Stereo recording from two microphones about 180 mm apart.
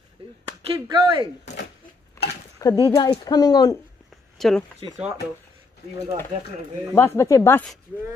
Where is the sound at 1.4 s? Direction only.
70° left (ahead or behind).